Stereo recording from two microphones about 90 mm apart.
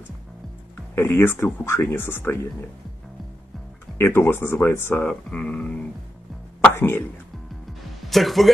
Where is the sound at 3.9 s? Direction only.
25° left (ahead or behind).